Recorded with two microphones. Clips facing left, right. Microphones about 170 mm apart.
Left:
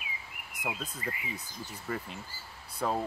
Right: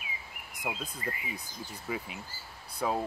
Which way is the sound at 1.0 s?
35° right (ahead or behind).